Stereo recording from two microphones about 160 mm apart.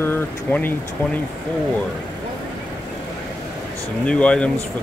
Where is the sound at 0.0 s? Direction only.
10° left (ahead or behind).